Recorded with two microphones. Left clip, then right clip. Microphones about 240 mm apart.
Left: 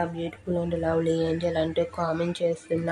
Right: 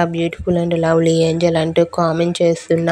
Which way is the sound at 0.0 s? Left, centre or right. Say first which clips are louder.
Right 12 dB; right.